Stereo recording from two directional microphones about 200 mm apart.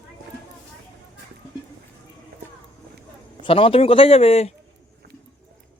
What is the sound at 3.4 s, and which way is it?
Speech, 25° left (ahead or behind).